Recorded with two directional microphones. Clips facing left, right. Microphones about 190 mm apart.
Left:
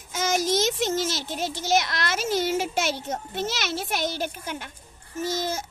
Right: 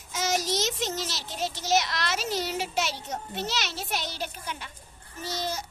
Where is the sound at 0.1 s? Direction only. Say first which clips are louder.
Left 4 dB; 50° left (ahead or behind).